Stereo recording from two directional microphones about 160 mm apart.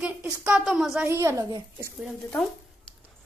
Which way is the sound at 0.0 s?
10° right (ahead or behind).